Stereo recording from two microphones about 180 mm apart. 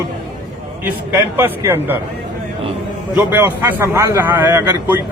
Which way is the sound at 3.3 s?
10° right (ahead or behind).